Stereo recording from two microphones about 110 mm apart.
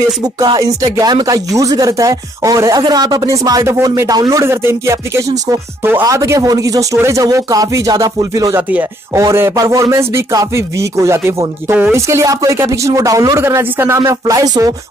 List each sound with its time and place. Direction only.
0.2 s speech: 35° right (ahead or behind)
8.5 s chopping: 15° right (ahead or behind)
9.2 s speech: 25° right (ahead or behind)